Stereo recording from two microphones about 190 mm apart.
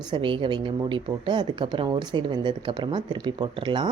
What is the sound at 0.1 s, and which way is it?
Speech, 25° right (ahead or behind).